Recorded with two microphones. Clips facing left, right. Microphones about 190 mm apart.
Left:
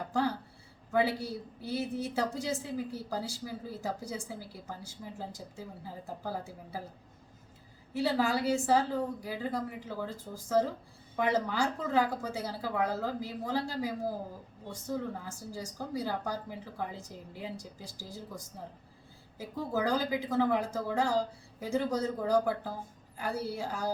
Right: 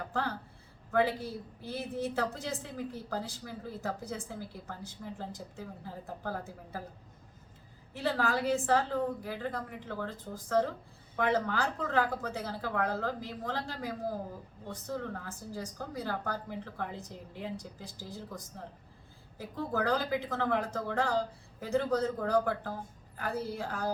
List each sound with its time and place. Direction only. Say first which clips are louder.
0.1 s a woman's voice: left 6 dB; 10° left (ahead or behind)
7.9 s a woman's voice: left 2 dB; 10° left (ahead or behind)